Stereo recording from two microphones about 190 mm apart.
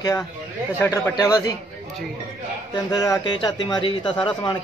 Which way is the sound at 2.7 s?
20° left (ahead or behind).